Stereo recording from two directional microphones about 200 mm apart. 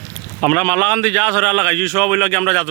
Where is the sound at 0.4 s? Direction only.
5° left (ahead or behind).